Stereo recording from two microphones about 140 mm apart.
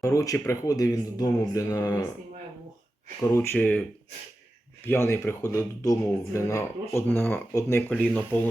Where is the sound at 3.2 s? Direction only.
15° left (ahead or behind).